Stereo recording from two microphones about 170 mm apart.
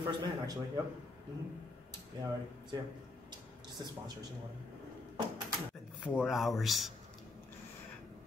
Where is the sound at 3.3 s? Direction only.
25° right (ahead or behind).